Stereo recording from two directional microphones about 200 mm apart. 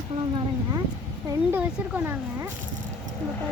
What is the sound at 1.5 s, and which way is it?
Speech, 10° right (ahead or behind).